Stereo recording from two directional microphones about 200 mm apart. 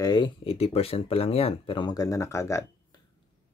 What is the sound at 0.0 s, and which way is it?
Speech, 20° left (ahead or behind).